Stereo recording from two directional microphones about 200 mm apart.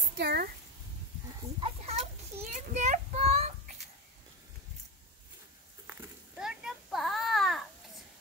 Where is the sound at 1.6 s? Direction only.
30° right (ahead or behind).